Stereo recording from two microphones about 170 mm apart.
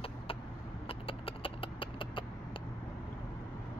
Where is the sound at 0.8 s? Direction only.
35° left (ahead or behind).